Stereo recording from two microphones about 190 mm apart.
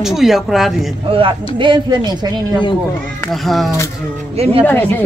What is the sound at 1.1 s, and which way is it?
Speech, 25° right (ahead or behind).